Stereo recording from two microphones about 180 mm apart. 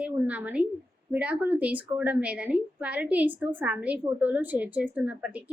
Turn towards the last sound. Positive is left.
turn(degrees=-10)  # may be behind; listen again after turning